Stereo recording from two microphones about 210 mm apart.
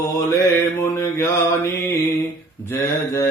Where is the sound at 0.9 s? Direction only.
10° left (ahead or behind).